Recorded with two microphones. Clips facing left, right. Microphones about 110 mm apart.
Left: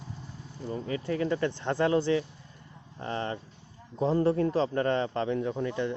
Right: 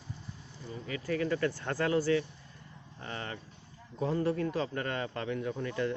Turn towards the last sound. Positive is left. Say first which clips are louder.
# left 3 dB
turn(degrees=20)  # may be behind; listen again after turning